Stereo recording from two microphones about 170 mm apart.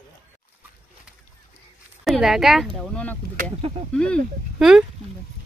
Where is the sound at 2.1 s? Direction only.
Centre (ahead or behind).